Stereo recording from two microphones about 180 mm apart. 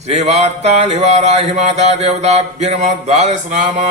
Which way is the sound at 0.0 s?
40° right (ahead or behind).